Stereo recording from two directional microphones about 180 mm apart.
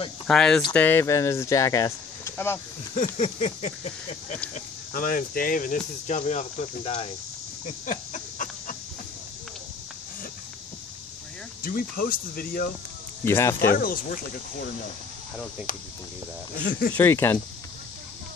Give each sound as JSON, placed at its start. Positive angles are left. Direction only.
{"t": 0.3, "sound": "speech", "side_deg": 5}
{"t": 3.2, "sound": "a sound", "side_deg": 40}
{"t": 4.6, "sound": "speech", "side_deg": 50}
{"t": 6.8, "sound": "a sound", "side_deg": 35}
{"t": 11.6, "sound": "speech", "side_deg": 55}
{"t": 13.3, "sound": "speech", "side_deg": 15}
{"t": 13.7, "sound": "speech", "side_deg": 55}
{"t": 15.7, "sound": "speech", "side_deg": 50}
{"t": 16.9, "sound": "speech", "side_deg": 10}